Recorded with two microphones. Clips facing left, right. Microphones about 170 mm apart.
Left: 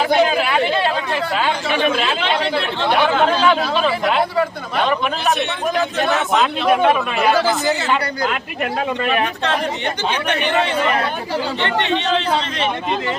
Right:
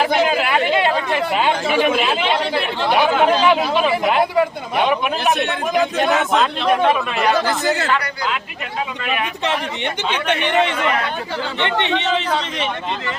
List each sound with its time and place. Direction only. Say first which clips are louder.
0.0 s chatter: left 1 dB; 5° right (ahead or behind)
0.7 s chatter: right 2 dB; 15° right (ahead or behind)
1.7 s speech: even; 10° right (ahead or behind)
6.1 s speech: even; 5° left (ahead or behind)
9.8 s speech: even; 25° right (ahead or behind)
10.7 s speech: left 2 dB; 35° left (ahead or behind)
11.6 s speech: right 2 dB; 20° right (ahead or behind)